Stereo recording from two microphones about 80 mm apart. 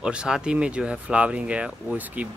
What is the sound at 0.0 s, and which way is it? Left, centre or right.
Speech, centre.